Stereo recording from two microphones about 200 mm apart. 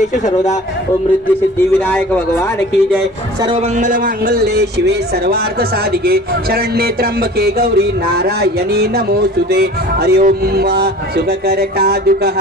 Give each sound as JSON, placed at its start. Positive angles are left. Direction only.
{"t": 0.0, "sound": "speech", "side_deg": 35}
{"t": 3.7, "sound": "a man's voice", "side_deg": -40}